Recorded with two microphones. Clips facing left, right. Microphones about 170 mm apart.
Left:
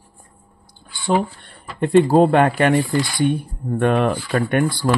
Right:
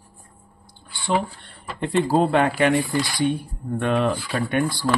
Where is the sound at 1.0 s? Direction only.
50° left (ahead or behind).